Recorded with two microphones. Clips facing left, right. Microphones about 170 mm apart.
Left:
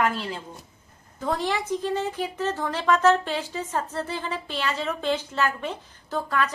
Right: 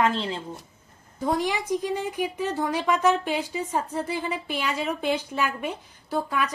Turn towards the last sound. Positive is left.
turn(degrees=-10)  # may be behind; listen again after turning